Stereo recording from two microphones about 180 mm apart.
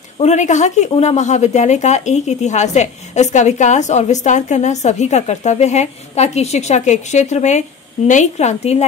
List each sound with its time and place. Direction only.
0.2 s a woman's voice: 40° left (ahead or behind)